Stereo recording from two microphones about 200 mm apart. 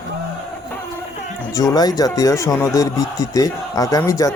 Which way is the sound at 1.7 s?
20° left (ahead or behind).